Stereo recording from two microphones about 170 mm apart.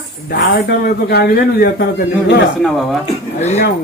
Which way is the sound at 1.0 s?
65° left (ahead or behind).